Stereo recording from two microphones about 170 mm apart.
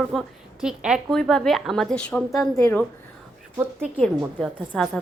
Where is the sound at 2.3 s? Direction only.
20° left (ahead or behind).